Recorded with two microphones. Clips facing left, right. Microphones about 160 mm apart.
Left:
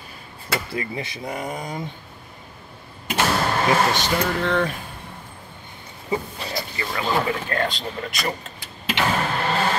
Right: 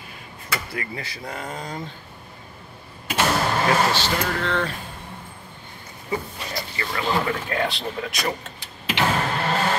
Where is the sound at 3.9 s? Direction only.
15° left (ahead or behind).